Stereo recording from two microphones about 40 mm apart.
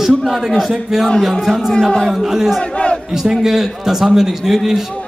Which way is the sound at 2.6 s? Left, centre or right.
Left.